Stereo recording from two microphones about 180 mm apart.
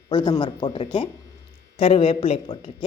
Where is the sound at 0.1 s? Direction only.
25° left (ahead or behind).